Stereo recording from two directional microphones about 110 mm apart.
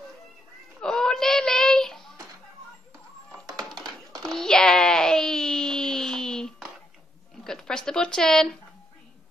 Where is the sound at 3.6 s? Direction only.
Centre (ahead or behind).